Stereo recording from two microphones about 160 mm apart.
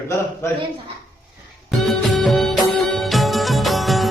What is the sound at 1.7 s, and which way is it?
Music of bollywood, centre (ahead or behind).